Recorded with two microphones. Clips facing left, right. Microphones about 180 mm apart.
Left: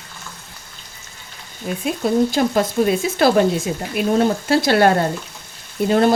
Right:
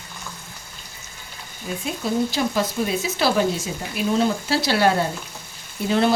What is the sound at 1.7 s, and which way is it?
A woman's voice, 60° left (ahead or behind).